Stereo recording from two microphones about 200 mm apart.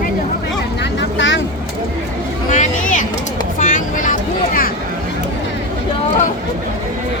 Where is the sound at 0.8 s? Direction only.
65° left (ahead or behind).